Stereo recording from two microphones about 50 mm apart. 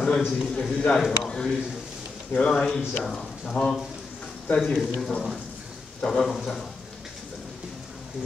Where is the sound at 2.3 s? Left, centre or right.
Left.